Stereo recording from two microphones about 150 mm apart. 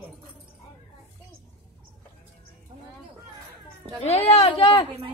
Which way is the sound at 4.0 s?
45° left (ahead or behind).